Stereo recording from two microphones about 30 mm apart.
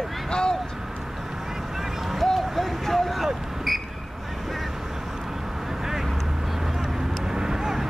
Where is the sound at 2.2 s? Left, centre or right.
Centre.